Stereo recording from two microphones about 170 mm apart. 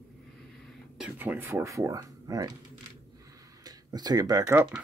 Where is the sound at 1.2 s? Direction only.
10° right (ahead or behind).